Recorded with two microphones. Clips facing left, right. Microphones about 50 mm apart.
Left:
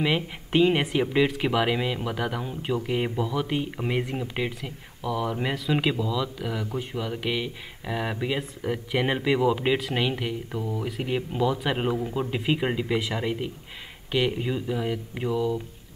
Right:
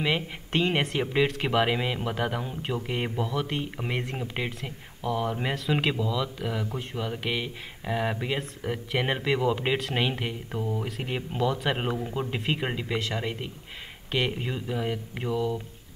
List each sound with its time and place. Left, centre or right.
0.0 s speech: centre
4.6 s speech: centre
5.3 s speech: centre